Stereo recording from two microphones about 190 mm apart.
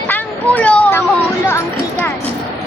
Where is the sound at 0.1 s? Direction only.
10° left (ahead or behind).